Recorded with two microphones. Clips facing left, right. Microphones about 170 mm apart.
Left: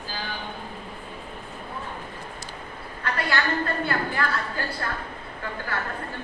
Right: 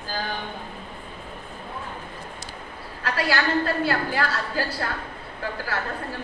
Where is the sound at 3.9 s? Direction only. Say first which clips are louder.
Right 2 dB; 80° right.